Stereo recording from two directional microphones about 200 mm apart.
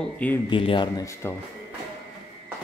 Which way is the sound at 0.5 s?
25° left (ahead or behind).